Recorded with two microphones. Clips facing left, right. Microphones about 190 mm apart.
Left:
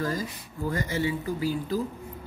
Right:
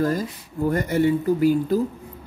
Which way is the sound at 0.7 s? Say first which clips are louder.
Right 8 dB; 60° right (ahead or behind).